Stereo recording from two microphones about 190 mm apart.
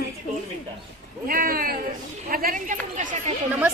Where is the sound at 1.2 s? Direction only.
50° right (ahead or behind).